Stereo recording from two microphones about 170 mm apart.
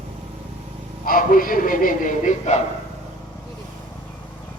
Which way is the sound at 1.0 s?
55° left (ahead or behind).